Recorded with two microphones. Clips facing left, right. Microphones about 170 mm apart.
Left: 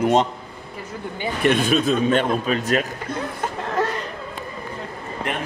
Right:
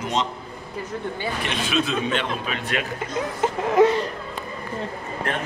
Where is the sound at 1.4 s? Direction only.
50° left (ahead or behind).